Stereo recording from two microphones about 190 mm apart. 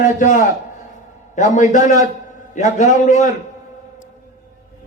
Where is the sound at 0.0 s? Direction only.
45° left (ahead or behind).